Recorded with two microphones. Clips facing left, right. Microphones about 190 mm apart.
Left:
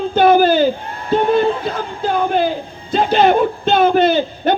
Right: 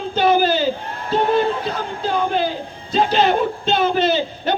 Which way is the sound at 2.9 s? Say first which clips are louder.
Left 4 dB; 55° left (ahead or behind).